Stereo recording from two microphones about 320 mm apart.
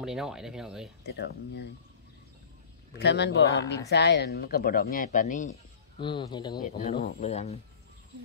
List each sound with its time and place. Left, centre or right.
0.0 s speech: centre
1.0 s a man's voice: left
3.0 s a man's voice: left
5.5 s a sound: centre
6.3 s speech: centre